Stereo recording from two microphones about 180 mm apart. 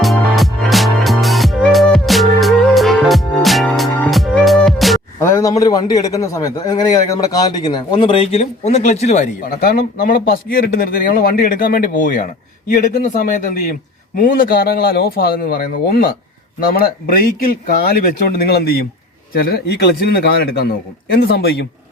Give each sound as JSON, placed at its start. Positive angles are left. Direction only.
{"t": 0.0, "sound": "music", "side_deg": 0}
{"t": 5.2, "sound": "a man's voice", "side_deg": 20}